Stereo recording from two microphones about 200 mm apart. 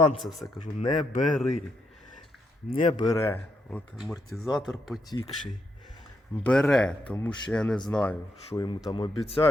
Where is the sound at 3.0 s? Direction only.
20° left (ahead or behind).